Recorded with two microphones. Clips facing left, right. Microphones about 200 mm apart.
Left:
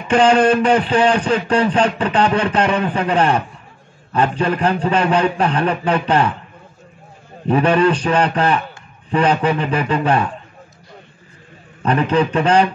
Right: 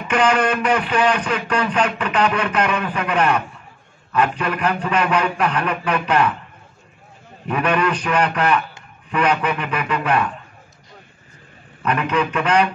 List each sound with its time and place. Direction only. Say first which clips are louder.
0.1 s speech: left 5 dB; 30° left (ahead or behind)
7.4 s a man's voice: left 6 dB; 30° left (ahead or behind)
11.8 s a man's voice: left 4 dB; 30° left (ahead or behind)